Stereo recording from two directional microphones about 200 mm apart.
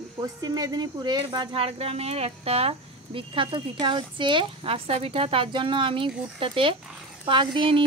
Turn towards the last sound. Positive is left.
turn(degrees=-25)  # may be behind; listen again after turning